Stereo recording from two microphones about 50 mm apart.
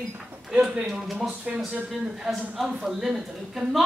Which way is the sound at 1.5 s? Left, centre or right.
Centre.